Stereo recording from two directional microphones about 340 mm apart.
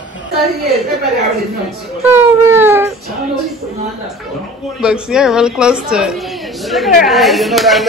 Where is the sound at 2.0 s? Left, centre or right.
Centre.